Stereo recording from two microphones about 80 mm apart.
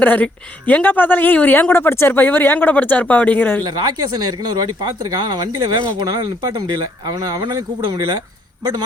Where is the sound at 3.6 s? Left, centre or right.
Right.